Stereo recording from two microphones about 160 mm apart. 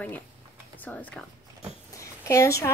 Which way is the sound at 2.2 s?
20° left (ahead or behind).